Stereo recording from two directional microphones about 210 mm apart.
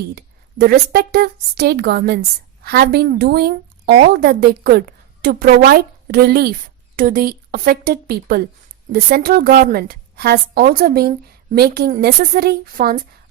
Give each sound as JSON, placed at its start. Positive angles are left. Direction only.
{"t": 0.2, "sound": "a woman's voice", "side_deg": -45}